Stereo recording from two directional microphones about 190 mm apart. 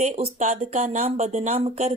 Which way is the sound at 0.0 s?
35° right (ahead or behind).